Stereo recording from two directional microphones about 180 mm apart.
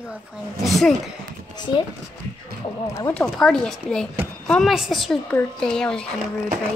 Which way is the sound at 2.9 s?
20° left (ahead or behind).